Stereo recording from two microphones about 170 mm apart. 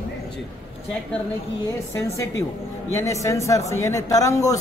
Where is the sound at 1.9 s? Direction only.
15° left (ahead or behind).